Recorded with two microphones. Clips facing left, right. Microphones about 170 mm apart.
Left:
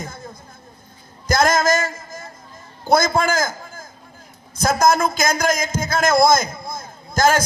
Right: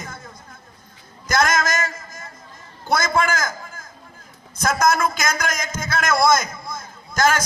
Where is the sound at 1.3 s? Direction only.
30° left (ahead or behind).